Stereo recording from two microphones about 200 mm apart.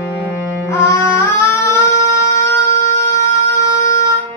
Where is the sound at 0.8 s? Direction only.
15° left (ahead or behind).